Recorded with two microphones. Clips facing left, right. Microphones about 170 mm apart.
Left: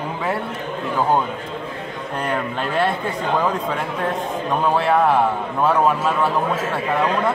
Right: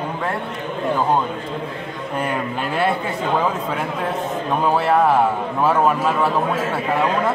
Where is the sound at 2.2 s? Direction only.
5° right (ahead or behind).